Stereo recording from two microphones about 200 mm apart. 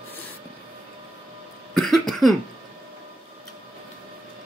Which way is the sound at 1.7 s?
Centre (ahead or behind).